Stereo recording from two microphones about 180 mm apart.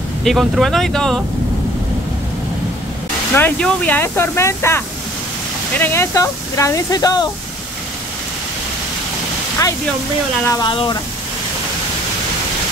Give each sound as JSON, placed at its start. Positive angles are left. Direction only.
{"t": 0.2, "sound": "speech", "side_deg": 0}
{"t": 3.3, "sound": "speech", "side_deg": 10}
{"t": 10.4, "sound": "speech", "side_deg": 20}